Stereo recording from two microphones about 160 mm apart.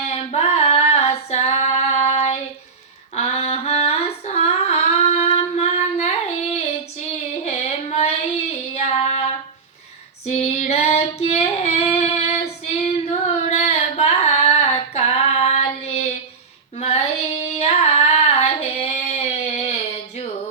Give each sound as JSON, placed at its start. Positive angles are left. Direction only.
{"t": 0.1, "sound": "female singing", "side_deg": 40}
{"t": 3.2, "sound": "a sound", "side_deg": 40}
{"t": 7.4, "sound": "child singing", "side_deg": 40}
{"t": 10.2, "sound": "female singing", "side_deg": 40}
{"t": 16.7, "sound": "child singing", "side_deg": 45}